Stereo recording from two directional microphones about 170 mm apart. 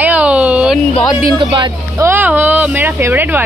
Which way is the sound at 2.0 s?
15° right (ahead or behind).